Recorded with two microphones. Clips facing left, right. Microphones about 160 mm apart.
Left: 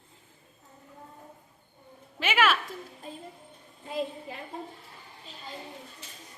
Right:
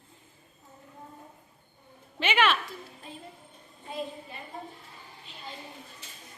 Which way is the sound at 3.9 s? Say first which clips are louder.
Left 4 dB; 90° left.